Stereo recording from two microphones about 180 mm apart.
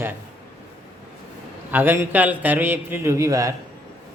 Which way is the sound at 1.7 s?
10° right (ahead or behind).